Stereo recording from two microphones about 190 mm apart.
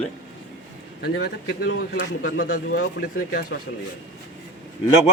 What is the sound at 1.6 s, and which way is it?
Speech, 90° left.